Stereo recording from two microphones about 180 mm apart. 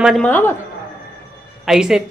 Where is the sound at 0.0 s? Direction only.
5° left (ahead or behind).